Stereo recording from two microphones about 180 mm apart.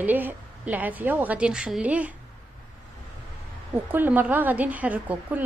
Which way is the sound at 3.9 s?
10° right (ahead or behind).